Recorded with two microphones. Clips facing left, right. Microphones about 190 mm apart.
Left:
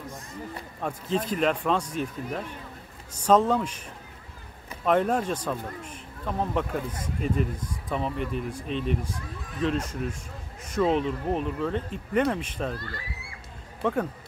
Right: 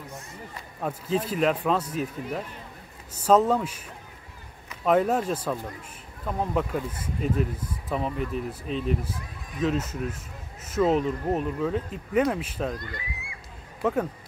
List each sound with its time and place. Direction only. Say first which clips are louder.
0.7 s speech: right 1 dB; 5° right (ahead or behind)
4.8 s speech: right 1 dB; 5° right (ahead or behind)
12.7 s speech: right 1 dB; 15° right (ahead or behind)